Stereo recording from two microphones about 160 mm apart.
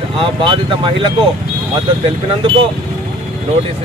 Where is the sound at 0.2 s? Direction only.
30° right (ahead or behind).